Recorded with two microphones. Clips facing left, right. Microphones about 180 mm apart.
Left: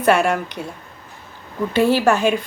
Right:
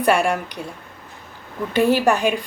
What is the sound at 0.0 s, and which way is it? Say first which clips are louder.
Speech: left 2 dB; 10° right (ahead or behind).